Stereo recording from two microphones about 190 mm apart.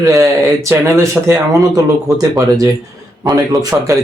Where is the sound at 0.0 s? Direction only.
20° right (ahead or behind).